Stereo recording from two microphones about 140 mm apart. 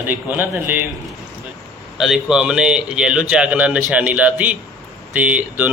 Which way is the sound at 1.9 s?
5° right (ahead or behind).